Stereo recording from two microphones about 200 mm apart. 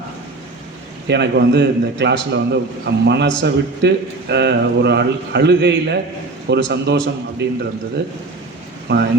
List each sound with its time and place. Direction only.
1.0 s a man's voice: 60° right (ahead or behind)
8.9 s a man's voice: 55° right (ahead or behind)